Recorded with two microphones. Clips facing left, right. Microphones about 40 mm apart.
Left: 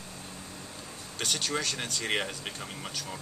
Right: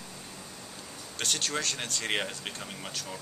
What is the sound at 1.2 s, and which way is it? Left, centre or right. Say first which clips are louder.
Speech: even; centre.